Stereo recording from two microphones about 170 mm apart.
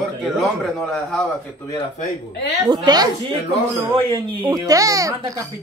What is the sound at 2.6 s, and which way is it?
Speech, 25° right (ahead or behind).